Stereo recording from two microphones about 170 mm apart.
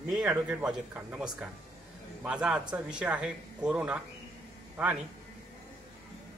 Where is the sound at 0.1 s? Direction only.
5° right (ahead or behind).